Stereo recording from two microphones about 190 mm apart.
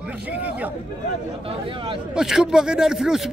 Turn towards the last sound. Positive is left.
turn(degrees=-5)  # may be behind; listen again after turning